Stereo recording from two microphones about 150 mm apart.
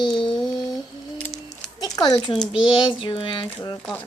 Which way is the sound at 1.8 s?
25° left (ahead or behind).